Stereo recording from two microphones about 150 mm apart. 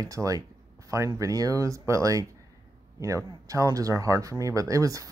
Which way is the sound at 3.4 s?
20° right (ahead or behind).